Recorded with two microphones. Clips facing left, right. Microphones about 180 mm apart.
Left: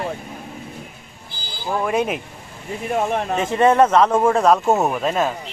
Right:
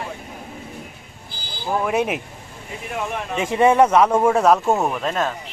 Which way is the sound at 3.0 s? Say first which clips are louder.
Left 5 dB; 45° left (ahead or behind).